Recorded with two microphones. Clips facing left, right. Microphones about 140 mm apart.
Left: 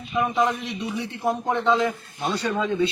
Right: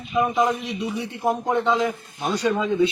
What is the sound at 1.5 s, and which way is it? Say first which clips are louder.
A man's voice: left 1 dB; 5° right (ahead or behind).